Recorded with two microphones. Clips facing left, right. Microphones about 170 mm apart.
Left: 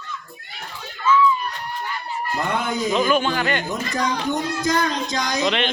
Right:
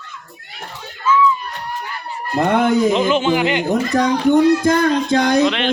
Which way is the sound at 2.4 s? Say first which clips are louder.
Right 11 dB; 55° right (ahead or behind).